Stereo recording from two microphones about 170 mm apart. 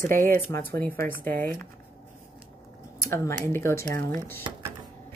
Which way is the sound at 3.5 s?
15° left (ahead or behind).